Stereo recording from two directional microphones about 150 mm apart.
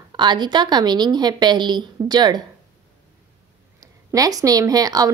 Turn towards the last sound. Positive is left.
turn(degrees=-25)  # may be behind; listen again after turning